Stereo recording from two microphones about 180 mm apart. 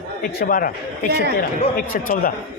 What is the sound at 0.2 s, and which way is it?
A man's voice, 55° left (ahead or behind).